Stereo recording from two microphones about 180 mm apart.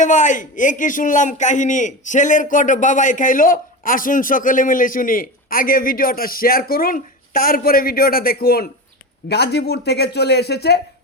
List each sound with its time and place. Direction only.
0.0 s a man's voice: 45° left (ahead or behind); by 10.8 s 65° left (ahead or behind)